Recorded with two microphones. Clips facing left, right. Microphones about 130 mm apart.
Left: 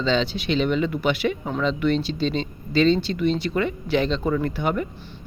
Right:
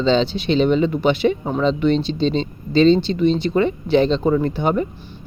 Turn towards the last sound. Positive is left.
turn(degrees=-30)  # may be behind; listen again after turning